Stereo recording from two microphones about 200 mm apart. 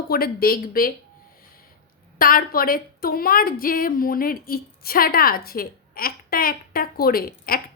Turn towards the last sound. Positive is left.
turn(degrees=45)  # may be behind; listen again after turning